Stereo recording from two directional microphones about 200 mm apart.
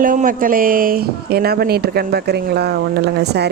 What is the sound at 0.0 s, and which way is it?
Speech, 40° right (ahead or behind).